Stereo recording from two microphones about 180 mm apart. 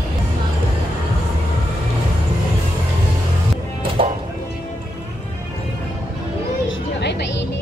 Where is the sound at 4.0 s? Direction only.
30° right (ahead or behind).